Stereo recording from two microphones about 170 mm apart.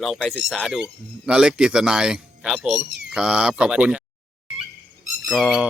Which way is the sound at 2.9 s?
85° right.